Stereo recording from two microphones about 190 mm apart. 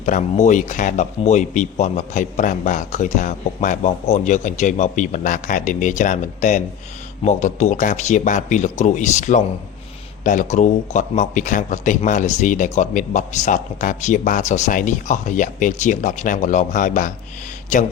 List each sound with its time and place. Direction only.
0.0 s speech: 40° left (ahead or behind)